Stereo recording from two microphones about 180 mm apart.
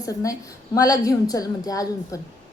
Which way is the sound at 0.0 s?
20° left (ahead or behind).